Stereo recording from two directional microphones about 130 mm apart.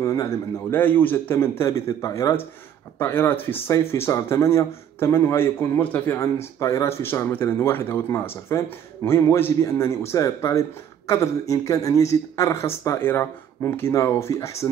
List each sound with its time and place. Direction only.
0.0 s a man's voice: 25° left (ahead or behind)
0.7 s a man's voice: 15° left (ahead or behind)